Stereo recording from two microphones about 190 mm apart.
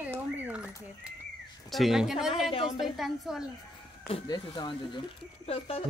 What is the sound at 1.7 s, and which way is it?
A man's voice, centre (ahead or behind).